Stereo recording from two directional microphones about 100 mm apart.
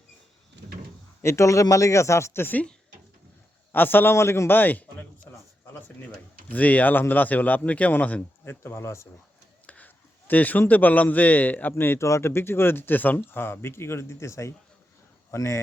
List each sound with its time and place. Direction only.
1.2 s speech: 30° left (ahead or behind)
6.5 s speech: 15° left (ahead or behind)
9.6 s a man's voice: 15° left (ahead or behind)